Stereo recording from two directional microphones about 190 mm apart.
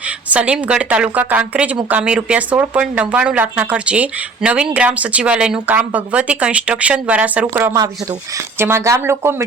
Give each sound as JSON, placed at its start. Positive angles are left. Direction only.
{"t": 0.3, "sound": "a woman's voice", "side_deg": -5}